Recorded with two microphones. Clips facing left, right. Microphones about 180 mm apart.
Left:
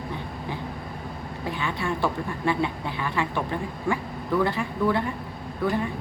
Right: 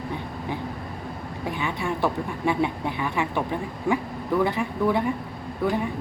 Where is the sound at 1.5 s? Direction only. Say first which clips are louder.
Even; 15° right (ahead or behind).